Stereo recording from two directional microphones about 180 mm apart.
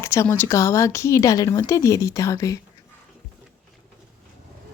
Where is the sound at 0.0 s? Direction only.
15° left (ahead or behind).